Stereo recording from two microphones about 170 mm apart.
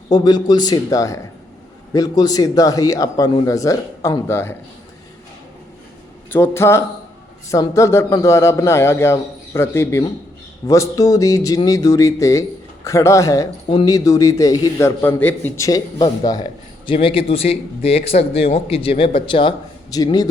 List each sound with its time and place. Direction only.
0.1 s speech: 25° left (ahead or behind)
6.3 s speech: 15° left (ahead or behind)